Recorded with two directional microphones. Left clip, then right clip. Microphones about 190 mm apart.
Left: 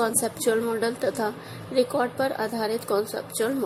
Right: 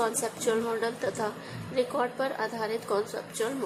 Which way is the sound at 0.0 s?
20° left (ahead or behind).